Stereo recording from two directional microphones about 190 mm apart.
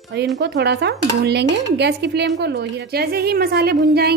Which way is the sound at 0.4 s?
60° right (ahead or behind).